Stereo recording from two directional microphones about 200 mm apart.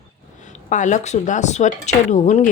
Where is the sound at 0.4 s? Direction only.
40° left (ahead or behind).